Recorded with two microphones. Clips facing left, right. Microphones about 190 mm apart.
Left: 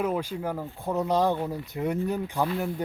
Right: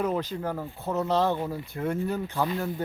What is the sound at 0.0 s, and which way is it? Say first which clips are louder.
Speech: even; 10° left (ahead or behind).